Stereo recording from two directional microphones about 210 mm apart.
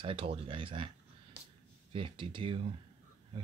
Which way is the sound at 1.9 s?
25° right (ahead or behind).